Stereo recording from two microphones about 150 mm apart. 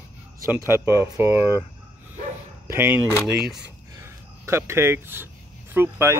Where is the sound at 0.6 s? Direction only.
15° right (ahead or behind).